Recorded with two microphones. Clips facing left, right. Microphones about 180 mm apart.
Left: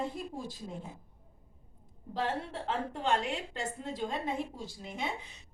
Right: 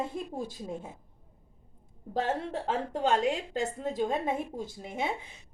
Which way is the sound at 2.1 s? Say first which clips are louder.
Right 4 dB; 45° right (ahead or behind).